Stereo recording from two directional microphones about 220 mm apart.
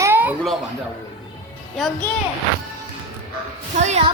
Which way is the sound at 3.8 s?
30° right (ahead or behind).